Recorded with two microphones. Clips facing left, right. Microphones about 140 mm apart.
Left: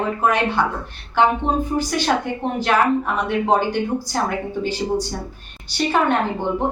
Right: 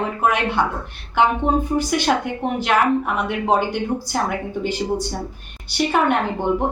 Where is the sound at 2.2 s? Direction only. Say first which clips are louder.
Even; 15° right (ahead or behind).